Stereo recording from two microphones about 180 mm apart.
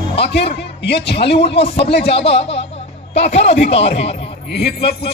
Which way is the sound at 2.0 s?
35° left (ahead or behind).